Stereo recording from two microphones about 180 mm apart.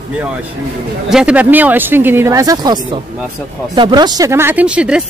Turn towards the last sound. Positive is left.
turn(degrees=-5)  # may be behind; listen again after turning